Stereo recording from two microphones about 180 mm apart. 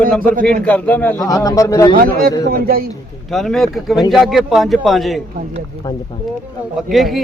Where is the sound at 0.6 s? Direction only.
10° left (ahead or behind).